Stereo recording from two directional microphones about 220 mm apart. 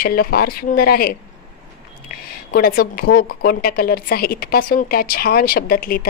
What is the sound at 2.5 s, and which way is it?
A woman's voice, 40° left (ahead or behind).